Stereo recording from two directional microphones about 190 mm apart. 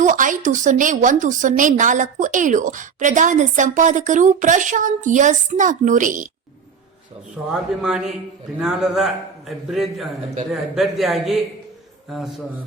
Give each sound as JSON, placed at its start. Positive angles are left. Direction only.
{"t": 0.0, "sound": "a woman's voice", "side_deg": -45}
{"t": 7.5, "sound": "a man's voice", "side_deg": -5}